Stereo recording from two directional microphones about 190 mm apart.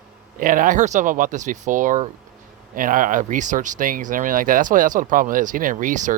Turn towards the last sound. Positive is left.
turn(degrees=-40)  # may be behind; listen again after turning